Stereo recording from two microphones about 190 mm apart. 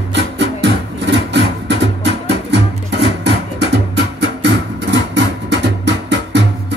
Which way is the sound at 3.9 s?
65° right (ahead or behind).